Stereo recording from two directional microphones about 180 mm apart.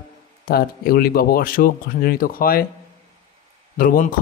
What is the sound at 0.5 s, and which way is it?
Speech, 55° left (ahead or behind).